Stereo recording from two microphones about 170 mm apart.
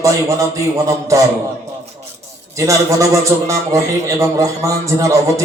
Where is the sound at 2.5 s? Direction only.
20° right (ahead or behind).